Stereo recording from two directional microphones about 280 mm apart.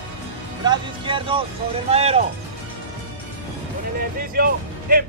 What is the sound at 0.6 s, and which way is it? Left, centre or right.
Speech, centre.